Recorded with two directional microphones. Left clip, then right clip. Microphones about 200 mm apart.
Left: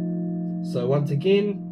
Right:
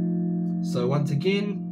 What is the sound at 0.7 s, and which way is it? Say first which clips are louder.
Speech: left 3 dB; 5° right (ahead or behind).